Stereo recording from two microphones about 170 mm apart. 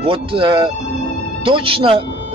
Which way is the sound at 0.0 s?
30° right (ahead or behind).